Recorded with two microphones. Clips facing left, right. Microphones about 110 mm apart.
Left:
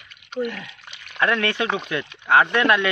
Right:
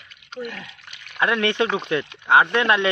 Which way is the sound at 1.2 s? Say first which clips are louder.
Right 1 dB; 20° right (ahead or behind).